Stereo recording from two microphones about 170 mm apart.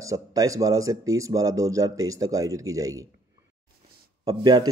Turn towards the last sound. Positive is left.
turn(degrees=-25)  # may be behind; listen again after turning